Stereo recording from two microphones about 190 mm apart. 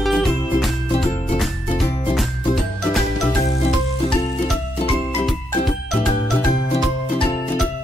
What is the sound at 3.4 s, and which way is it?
Music, 35° left (ahead or behind).